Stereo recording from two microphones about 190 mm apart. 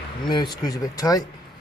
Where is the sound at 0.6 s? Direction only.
20° left (ahead or behind).